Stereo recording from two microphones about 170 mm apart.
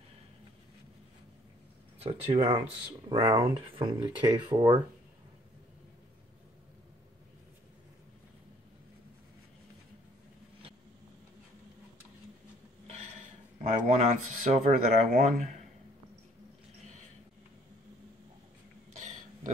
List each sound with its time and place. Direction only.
2.0 s speech: 35° right (ahead or behind)
13.7 s speech: 40° right (ahead or behind)
18.9 s a sound: 45° right (ahead or behind)